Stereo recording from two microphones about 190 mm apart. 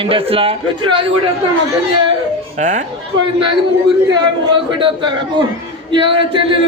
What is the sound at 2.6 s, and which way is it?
Speech, 40° right (ahead or behind).